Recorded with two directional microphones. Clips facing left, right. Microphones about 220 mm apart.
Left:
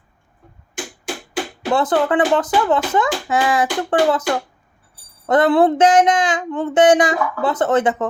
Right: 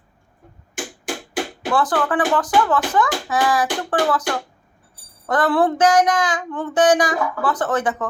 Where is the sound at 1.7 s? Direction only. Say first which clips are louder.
Left 3 dB; 25° left (ahead or behind).